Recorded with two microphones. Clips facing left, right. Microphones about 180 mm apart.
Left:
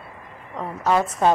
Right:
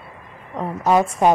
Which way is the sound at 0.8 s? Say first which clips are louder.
Right 3 dB; 15° right (ahead or behind).